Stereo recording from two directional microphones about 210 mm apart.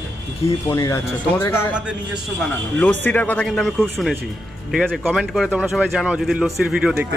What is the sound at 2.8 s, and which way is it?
Speech, 10° left (ahead or behind).